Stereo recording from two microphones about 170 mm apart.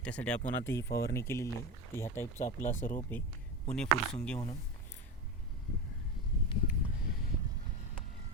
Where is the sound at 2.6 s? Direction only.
50° left (ahead or behind).